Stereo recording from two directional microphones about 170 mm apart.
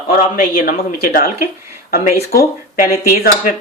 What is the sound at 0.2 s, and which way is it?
Speech, 55° left (ahead or behind).